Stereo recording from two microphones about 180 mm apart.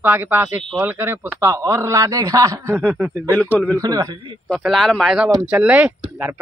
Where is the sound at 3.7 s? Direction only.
20° right (ahead or behind).